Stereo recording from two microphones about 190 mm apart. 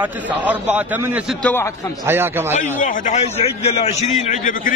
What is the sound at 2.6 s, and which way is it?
A man's voice, 40° left (ahead or behind).